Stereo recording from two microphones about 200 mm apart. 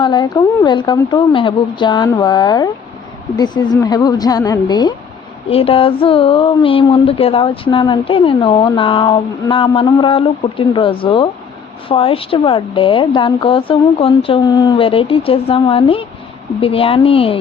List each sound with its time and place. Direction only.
0.0 s speech: 20° left (ahead or behind)